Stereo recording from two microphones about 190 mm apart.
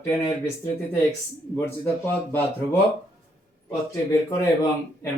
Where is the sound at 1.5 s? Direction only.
10° left (ahead or behind).